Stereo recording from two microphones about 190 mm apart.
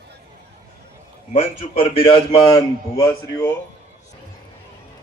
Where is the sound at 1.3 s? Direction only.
30° left (ahead or behind).